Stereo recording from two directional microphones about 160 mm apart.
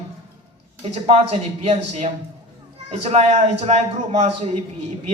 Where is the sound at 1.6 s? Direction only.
40° right (ahead or behind).